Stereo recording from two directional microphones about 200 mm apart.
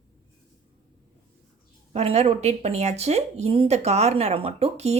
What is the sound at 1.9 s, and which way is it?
Speech, 30° right (ahead or behind).